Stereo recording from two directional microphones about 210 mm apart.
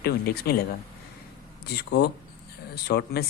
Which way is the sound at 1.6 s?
50° left (ahead or behind).